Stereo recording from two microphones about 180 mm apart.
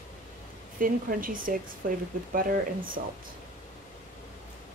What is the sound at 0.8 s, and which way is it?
Speech, 50° right (ahead or behind).